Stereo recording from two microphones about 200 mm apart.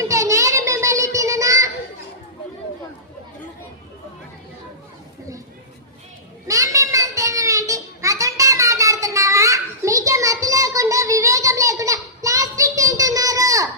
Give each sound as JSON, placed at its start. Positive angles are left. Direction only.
{"t": 0.0, "sound": "child singing", "side_deg": -15}
{"t": 6.5, "sound": "child singing", "side_deg": -15}